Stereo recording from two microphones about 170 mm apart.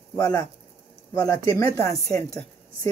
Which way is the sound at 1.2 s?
20° left (ahead or behind).